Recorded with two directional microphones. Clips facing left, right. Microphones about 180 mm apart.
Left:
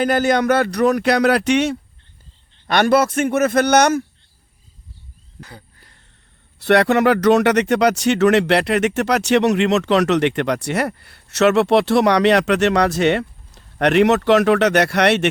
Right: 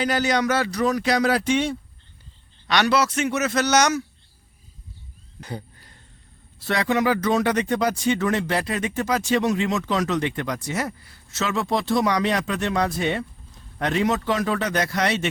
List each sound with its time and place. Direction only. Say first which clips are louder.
0.0 s speech: left 5 dB; 50° left (ahead or behind); by 1.8 s 75° left (ahead or behind)
2.6 s a man's voice: left 5 dB; 50° left (ahead or behind)
5.4 s speech: right 6 dB; 20° right (ahead or behind)
6.6 s speech: left 8 dB; 70° left (ahead or behind)